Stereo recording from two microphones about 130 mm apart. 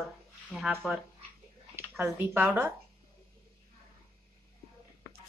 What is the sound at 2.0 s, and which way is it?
Speech, 15° right (ahead or behind).